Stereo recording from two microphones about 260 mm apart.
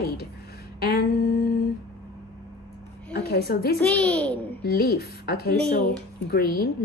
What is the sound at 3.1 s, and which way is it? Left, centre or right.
Speech, left.